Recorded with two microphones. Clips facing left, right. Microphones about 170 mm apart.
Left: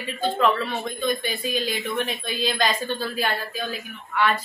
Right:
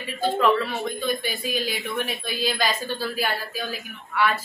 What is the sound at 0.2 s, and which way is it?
Speech, 5° right (ahead or behind).